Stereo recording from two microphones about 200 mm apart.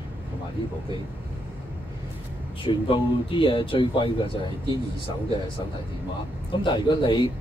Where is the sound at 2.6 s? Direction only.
25° left (ahead or behind).